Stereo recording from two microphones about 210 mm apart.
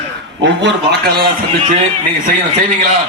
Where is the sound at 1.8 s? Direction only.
35° right (ahead or behind).